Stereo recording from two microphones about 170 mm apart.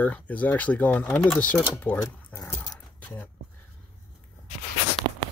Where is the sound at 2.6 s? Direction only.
5° left (ahead or behind).